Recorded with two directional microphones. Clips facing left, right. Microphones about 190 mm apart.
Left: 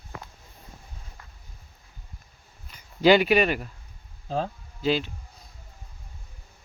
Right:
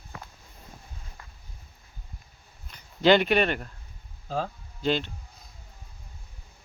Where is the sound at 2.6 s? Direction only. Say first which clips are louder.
Left 2 dB; 10° left (ahead or behind).